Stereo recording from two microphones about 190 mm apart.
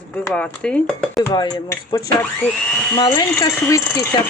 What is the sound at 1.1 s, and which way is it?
Speech, 20° left (ahead or behind).